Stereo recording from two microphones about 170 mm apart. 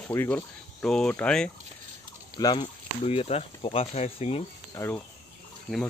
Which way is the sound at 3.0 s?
35° left (ahead or behind).